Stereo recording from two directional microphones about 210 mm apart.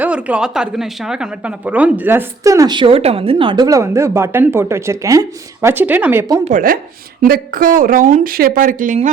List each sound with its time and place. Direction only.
0.0 s a woman's voice: 5° right (ahead or behind)
6.4 s speech: 40° right (ahead or behind)